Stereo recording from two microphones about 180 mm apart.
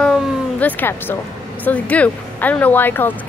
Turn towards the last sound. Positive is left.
turn(degrees=10)  # may be behind; listen again after turning